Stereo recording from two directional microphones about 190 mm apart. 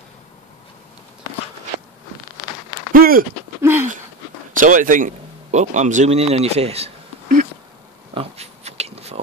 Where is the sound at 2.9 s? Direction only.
50° right (ahead or behind).